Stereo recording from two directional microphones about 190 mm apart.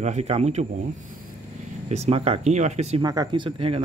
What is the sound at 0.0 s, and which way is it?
Speech, 35° right (ahead or behind).